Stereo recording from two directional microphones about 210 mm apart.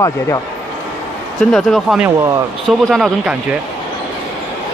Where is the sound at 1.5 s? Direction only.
Centre (ahead or behind).